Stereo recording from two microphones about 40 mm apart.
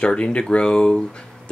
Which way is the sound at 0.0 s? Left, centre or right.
Left.